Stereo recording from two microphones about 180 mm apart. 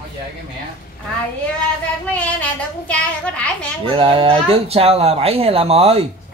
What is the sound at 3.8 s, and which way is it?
Speech, 30° right (ahead or behind).